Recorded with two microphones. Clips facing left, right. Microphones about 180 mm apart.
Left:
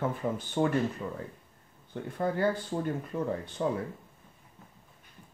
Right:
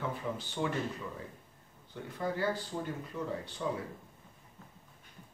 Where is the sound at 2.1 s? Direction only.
55° left (ahead or behind).